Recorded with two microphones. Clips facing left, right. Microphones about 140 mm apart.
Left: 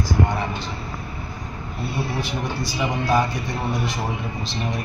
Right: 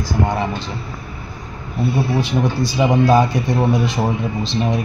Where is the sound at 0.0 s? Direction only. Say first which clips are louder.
Right 3 dB; 30° right (ahead or behind).